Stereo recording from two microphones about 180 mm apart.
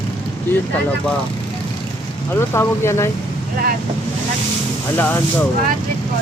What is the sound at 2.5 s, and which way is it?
Speech, 15° left (ahead or behind).